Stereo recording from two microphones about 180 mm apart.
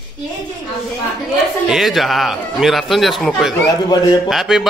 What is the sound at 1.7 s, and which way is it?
Speech, centre (ahead or behind).